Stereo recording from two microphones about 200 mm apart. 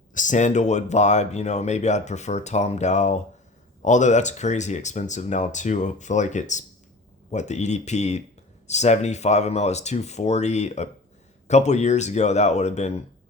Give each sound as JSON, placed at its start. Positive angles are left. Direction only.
{"t": 0.1, "sound": "speech", "side_deg": 40}